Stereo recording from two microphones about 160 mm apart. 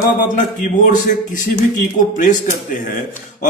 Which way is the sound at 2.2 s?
55° left (ahead or behind).